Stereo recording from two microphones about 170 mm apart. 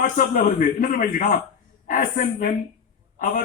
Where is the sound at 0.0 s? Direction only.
50° left (ahead or behind).